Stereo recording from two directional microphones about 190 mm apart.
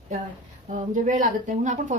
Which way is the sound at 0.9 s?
40° right (ahead or behind).